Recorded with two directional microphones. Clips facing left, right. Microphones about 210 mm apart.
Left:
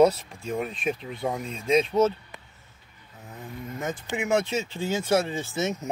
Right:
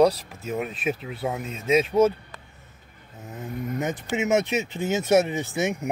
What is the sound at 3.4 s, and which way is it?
Speech, 20° right (ahead or behind).